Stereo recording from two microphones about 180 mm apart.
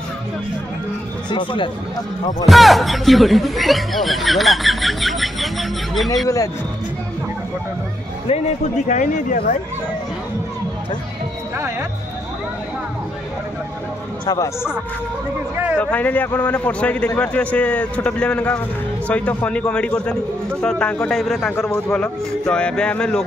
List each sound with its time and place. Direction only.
1.3 s speech: 30° left (ahead or behind)
2.4 s speech: centre (ahead or behind)
6.2 s speech: 20° left (ahead or behind)
8.3 s a man's voice: 40° left (ahead or behind)
14.2 s speech: 20° left (ahead or behind)
15.5 s speech: 10° right (ahead or behind)
15.8 s a man's voice: 10° left (ahead or behind)